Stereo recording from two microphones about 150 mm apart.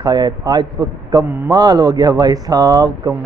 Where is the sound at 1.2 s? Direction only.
15° right (ahead or behind).